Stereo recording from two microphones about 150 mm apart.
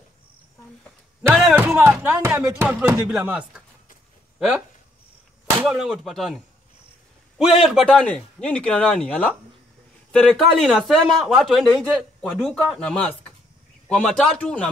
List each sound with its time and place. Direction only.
1.5 s speech: 10° right (ahead or behind)
2.1 s a man's voice: 20° right (ahead or behind); by 14.7 s 5° left (ahead or behind)